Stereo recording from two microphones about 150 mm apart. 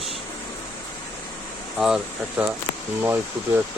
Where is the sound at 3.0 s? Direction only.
15° right (ahead or behind).